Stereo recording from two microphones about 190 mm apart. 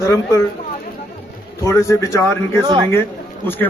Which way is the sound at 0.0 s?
15° left (ahead or behind).